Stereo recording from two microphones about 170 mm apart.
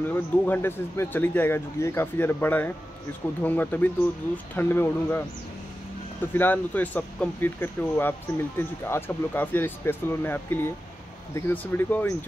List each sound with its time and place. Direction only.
0.1 s speech: 15° left (ahead or behind)
6.3 s speech: 10° left (ahead or behind)